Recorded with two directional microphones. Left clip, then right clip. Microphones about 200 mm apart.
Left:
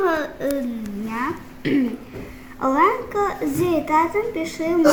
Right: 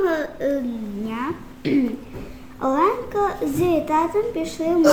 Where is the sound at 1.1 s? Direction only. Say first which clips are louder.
Left 3 dB; centre (ahead or behind).